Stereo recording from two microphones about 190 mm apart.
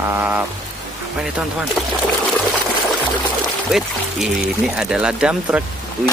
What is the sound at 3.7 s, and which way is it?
Speech, centre (ahead or behind).